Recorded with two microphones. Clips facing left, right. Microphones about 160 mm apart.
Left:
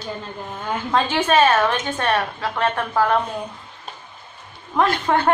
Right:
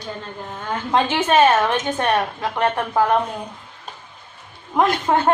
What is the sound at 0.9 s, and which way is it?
A woman's voice, 20° right (ahead or behind).